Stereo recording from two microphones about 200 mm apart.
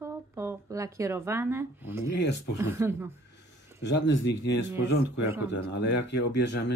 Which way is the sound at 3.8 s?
60° left (ahead or behind).